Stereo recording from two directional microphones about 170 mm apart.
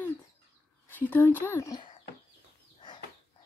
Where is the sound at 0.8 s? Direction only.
10° left (ahead or behind).